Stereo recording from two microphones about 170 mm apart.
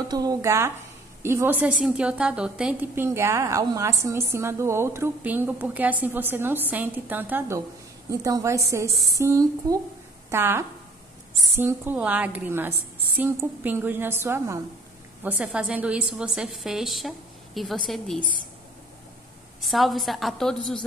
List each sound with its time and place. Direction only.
0.1 s a woman's voice: 20° right (ahead or behind); by 18.2 s centre (ahead or behind)
19.6 s a woman's voice: centre (ahead or behind)